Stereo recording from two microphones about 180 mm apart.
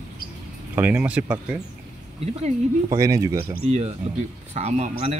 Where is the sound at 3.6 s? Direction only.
35° right (ahead or behind).